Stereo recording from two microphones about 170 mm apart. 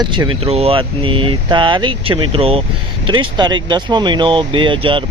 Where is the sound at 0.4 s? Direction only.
35° right (ahead or behind).